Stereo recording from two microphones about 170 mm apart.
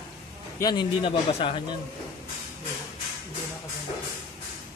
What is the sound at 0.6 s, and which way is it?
A man's voice, 25° left (ahead or behind).